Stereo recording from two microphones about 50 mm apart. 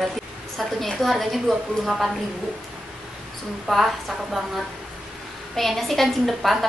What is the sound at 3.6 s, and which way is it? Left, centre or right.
Speech, centre.